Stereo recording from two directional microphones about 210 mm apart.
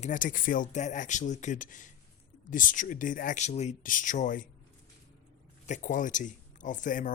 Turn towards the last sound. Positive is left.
turn(degrees=40)  # may be behind; listen again after turning